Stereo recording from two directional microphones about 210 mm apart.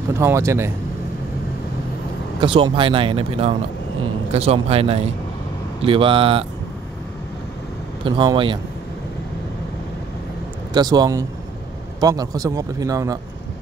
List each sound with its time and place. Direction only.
0.1 s speech: 15° right (ahead or behind)
2.4 s speech: 25° right (ahead or behind)
8.0 s speech: 20° right (ahead or behind)
10.7 s speech: 20° right (ahead or behind)